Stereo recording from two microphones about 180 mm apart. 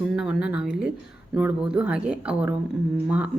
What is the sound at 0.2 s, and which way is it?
Speech, 5° right (ahead or behind).